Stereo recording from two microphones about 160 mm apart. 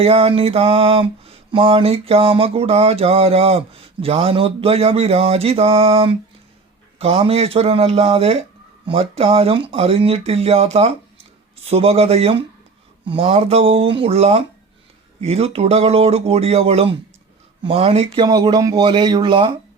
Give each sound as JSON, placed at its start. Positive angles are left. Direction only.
{"t": 0.0, "sound": "mantra", "side_deg": -35}
{"t": 17.6, "sound": "speech", "side_deg": -35}